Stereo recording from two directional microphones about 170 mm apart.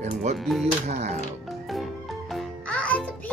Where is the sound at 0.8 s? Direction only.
40° right (ahead or behind).